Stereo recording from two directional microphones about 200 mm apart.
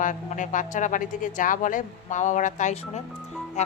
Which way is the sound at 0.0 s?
40° left (ahead or behind).